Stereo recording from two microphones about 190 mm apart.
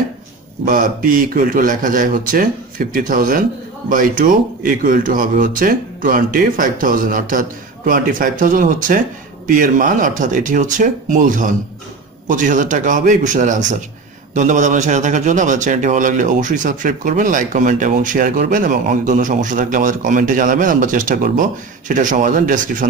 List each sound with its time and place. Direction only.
0.7 s a man's voice: 45° right (ahead or behind)